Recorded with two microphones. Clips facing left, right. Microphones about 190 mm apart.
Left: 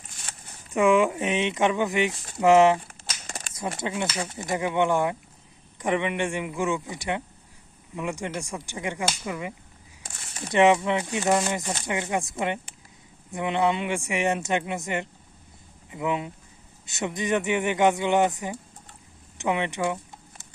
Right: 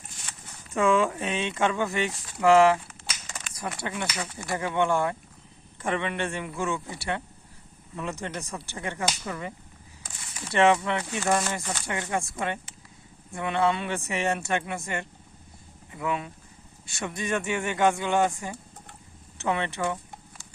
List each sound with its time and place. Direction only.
0.7 s speech: 15° left (ahead or behind)